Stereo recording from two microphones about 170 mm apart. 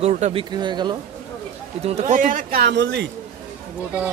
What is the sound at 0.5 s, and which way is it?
Speech, 25° right (ahead or behind).